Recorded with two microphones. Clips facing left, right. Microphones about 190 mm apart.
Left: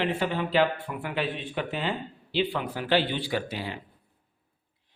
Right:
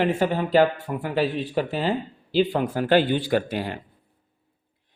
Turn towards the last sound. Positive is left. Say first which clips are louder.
# right 7 dB
turn(degrees=-50)  # may be behind; listen again after turning